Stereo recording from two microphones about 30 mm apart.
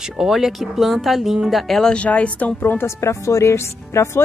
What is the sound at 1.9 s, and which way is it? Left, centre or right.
Speech, left.